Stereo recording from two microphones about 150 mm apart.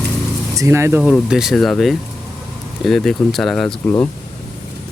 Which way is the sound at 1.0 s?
5° right (ahead or behind).